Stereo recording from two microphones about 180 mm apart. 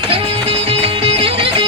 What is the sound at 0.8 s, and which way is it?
Music, 30° right (ahead or behind).